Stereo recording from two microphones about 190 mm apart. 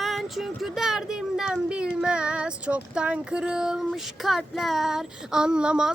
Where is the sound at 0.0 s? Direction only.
Centre (ahead or behind).